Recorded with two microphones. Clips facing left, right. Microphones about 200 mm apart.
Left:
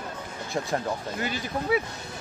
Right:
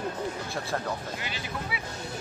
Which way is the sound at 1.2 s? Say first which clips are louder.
Left 6 dB; 45° left (ahead or behind).